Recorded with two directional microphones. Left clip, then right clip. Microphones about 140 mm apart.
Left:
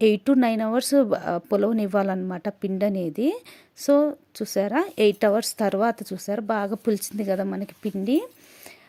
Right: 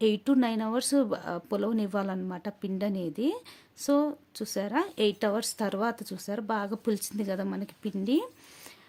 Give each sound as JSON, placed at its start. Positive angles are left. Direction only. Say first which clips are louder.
{"t": 0.0, "sound": "speech", "louder": "left 6 dB", "side_deg": 40}